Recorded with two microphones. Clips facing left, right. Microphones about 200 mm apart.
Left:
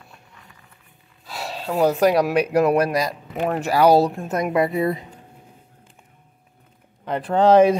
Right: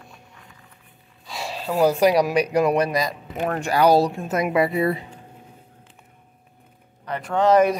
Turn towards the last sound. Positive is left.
turn(degrees=30)  # may be behind; listen again after turning